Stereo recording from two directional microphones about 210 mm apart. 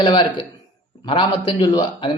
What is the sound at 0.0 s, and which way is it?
Speech, 20° left (ahead or behind).